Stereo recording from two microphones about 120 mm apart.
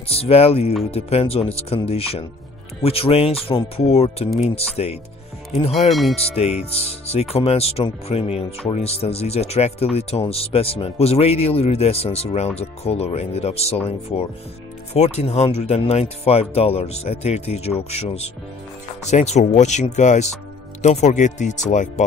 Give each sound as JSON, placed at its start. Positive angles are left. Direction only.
{"t": 0.1, "sound": "speech", "side_deg": 55}
{"t": 5.9, "sound": "tubular bells", "side_deg": 0}
{"t": 6.3, "sound": "speech", "side_deg": 60}
{"t": 20.8, "sound": "speech", "side_deg": 75}